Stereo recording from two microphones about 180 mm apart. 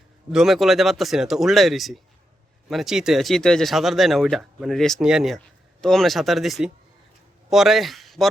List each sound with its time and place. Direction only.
0.3 s a man's voice: centre (ahead or behind)